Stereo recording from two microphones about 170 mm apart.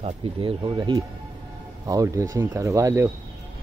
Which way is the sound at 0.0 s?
35° right (ahead or behind).